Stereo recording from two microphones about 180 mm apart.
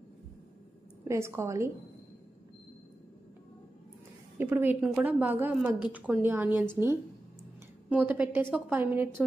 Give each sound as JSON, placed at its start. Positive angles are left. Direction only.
{"t": 1.0, "sound": "a woman's voice", "side_deg": -15}
{"t": 4.4, "sound": "a woman's voice", "side_deg": -10}
{"t": 7.9, "sound": "a woman's voice", "side_deg": -10}